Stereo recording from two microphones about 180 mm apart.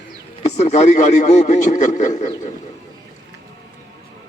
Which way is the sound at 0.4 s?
40° left (ahead or behind).